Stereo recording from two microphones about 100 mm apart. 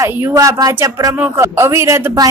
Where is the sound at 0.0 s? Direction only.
35° right (ahead or behind).